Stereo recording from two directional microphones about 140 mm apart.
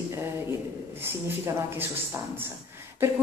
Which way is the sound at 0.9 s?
15° right (ahead or behind).